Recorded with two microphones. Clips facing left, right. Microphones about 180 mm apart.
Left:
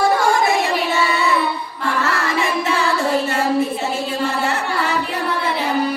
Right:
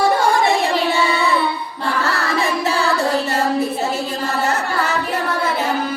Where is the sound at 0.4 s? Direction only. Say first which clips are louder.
Right 1 dB; 35° right (ahead or behind).